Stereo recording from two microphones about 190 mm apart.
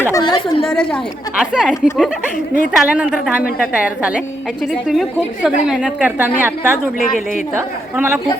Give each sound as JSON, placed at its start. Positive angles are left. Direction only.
{"t": 0.0, "sound": "speech", "side_deg": 20}
{"t": 0.6, "sound": "a woman's voice", "side_deg": 5}